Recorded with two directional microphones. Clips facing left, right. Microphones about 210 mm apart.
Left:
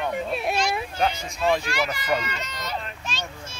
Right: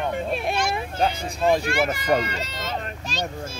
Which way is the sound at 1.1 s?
55° right (ahead or behind).